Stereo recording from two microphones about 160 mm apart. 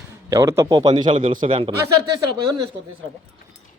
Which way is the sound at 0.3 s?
20° right (ahead or behind).